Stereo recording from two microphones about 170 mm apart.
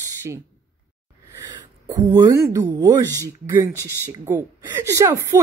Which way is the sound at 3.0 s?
15° left (ahead or behind).